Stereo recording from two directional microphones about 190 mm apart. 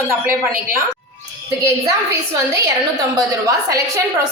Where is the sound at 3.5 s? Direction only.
15° right (ahead or behind).